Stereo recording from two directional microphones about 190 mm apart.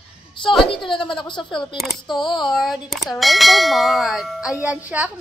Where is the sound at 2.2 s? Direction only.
25° left (ahead or behind).